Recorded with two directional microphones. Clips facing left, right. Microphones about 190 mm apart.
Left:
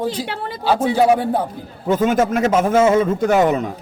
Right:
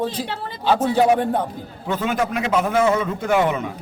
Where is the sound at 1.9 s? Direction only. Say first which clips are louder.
Left 6 dB; 45° left (ahead or behind).